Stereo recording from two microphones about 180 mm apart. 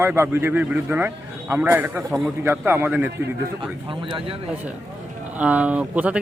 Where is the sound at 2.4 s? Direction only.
15° right (ahead or behind).